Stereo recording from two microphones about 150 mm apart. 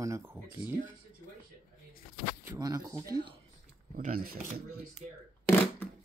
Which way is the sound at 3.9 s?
70° right (ahead or behind).